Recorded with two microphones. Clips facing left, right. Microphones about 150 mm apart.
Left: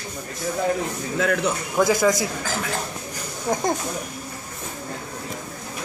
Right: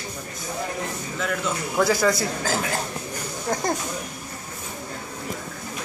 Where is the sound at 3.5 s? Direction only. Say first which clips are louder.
Left 3 dB; 5° left (ahead or behind).